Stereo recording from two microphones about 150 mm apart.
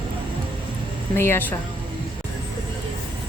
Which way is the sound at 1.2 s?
15° left (ahead or behind).